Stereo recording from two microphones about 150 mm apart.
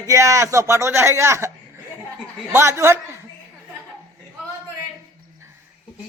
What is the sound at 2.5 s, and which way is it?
Speech, 20° right (ahead or behind).